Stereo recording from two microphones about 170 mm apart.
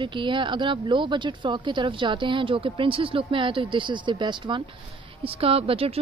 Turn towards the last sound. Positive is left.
turn(degrees=-35)  # may be behind; listen again after turning